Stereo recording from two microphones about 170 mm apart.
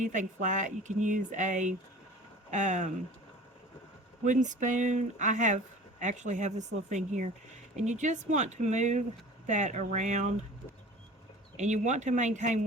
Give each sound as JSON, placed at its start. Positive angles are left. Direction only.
{"t": 0.0, "sound": "speech", "side_deg": -45}
{"t": 4.2, "sound": "speech", "side_deg": -45}
{"t": 7.8, "sound": "speech", "side_deg": -45}
{"t": 11.5, "sound": "speech", "side_deg": -45}